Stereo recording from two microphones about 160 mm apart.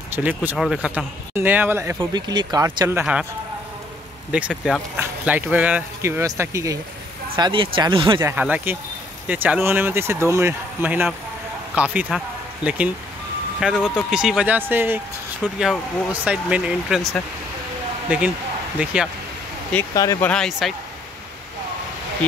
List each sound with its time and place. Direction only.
0.1 s speech: 10° right (ahead or behind)
2.1 s speech: 25° right (ahead or behind)
3.0 s speech: 5° right (ahead or behind)
4.3 s speech: 5° right (ahead or behind)
7.3 s speech: 30° right (ahead or behind)
8.2 s speech: 10° right (ahead or behind)
19.9 s speech: 20° left (ahead or behind); by 20.7 s centre (ahead or behind)